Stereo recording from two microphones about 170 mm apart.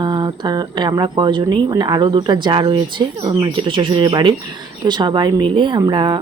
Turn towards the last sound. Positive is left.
turn(degrees=-25)  # may be behind; listen again after turning